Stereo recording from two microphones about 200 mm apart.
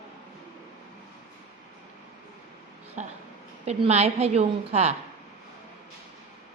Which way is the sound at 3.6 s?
30° right (ahead or behind).